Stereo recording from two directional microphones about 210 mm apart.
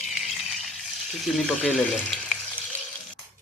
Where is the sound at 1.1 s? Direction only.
Centre (ahead or behind).